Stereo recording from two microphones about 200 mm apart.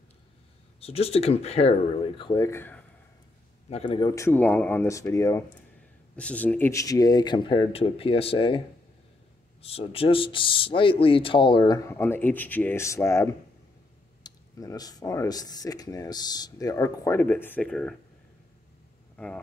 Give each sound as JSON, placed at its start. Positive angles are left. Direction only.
{"t": 0.7, "sound": "speech", "side_deg": 30}
{"t": 3.7, "sound": "speech", "side_deg": 25}
{"t": 19.1, "sound": "speech", "side_deg": 5}